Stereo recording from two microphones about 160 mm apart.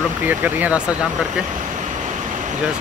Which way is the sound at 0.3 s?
10° right (ahead or behind).